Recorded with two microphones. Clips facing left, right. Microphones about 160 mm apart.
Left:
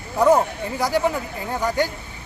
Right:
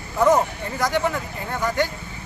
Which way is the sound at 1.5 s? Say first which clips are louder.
Left 1 dB; 10° left (ahead or behind).